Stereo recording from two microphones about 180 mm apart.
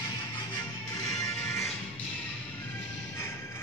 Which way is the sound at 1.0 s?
15° left (ahead or behind).